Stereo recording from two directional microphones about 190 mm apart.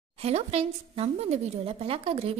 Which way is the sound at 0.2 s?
35° right (ahead or behind).